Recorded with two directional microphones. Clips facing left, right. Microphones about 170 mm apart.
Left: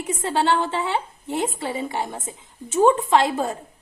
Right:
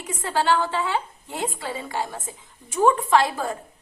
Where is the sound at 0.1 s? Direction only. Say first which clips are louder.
Left 1 dB; 25° left (ahead or behind).